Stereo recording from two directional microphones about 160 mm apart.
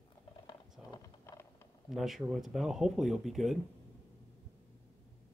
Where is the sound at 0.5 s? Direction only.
20° left (ahead or behind).